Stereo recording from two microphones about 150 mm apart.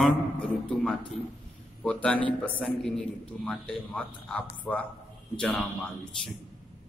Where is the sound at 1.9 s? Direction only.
10° left (ahead or behind).